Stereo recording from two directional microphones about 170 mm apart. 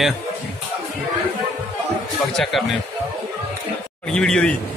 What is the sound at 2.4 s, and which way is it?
Speech, centre (ahead or behind).